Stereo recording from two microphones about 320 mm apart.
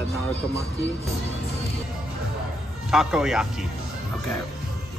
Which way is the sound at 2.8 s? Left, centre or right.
Centre.